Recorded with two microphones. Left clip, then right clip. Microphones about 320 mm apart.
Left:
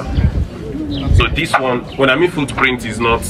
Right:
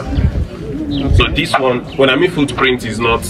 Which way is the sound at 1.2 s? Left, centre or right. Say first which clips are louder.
Right 1 dB; centre.